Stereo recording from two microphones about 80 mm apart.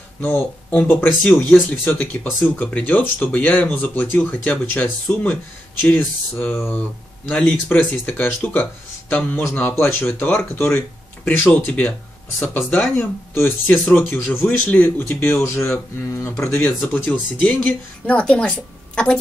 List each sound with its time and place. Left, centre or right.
0.2 s a woman's voice: left